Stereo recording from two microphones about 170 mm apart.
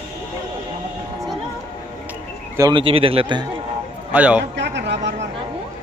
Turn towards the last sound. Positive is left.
turn(degrees=-90)